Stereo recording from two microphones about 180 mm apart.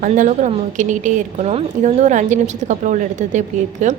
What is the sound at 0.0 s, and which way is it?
A woman's voice, 45° right (ahead or behind).